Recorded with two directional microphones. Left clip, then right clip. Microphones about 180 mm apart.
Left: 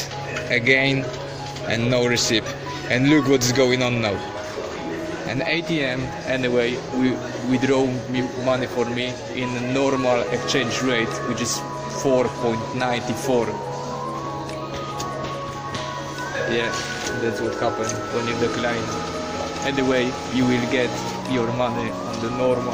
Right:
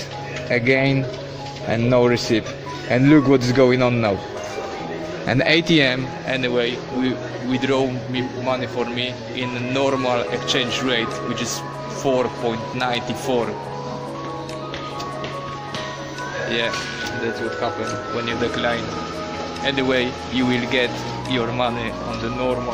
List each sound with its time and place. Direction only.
0.5 s speech: 25° right (ahead or behind)
5.3 s a man's voice: 45° right (ahead or behind)
6.2 s a man's voice: centre (ahead or behind)
16.4 s speech: centre (ahead or behind)
18.2 s a man's voice: centre (ahead or behind)